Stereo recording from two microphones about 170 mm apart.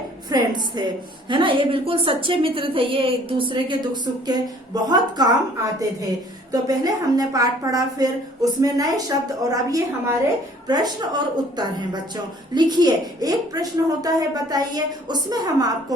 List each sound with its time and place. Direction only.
0.3 s a woman's voice: 25° right (ahead or behind)
6.5 s a woman's voice: 20° right (ahead or behind)